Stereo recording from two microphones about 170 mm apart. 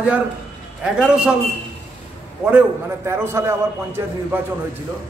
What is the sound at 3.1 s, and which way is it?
A man's voice, 15° right (ahead or behind).